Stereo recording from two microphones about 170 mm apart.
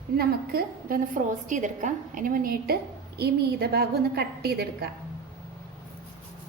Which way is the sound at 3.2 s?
70° right (ahead or behind).